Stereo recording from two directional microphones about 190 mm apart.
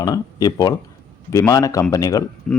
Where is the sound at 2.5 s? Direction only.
5° left (ahead or behind).